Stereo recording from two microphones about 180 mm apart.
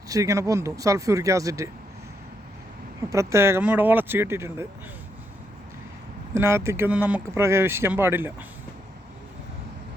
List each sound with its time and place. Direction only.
0.1 s speech: 15° right (ahead or behind)
3.1 s speech: 15° right (ahead or behind)
6.3 s speech: 15° right (ahead or behind)